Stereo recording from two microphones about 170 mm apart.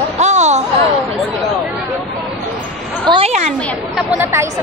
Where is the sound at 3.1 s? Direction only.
35° right (ahead or behind).